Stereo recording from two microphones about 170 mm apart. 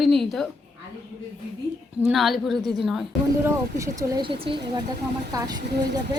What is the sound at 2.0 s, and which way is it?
A woman's voice, centre (ahead or behind).